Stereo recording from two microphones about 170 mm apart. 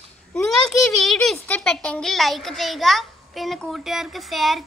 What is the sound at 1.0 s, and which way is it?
A child's voice, centre (ahead or behind).